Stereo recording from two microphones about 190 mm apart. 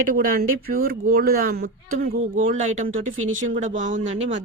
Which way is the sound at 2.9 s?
90° right.